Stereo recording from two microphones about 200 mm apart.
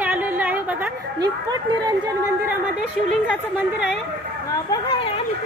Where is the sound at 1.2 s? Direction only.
20° right (ahead or behind).